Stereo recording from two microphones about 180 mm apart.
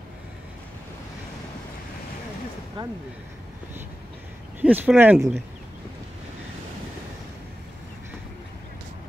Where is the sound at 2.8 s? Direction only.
25° right (ahead or behind).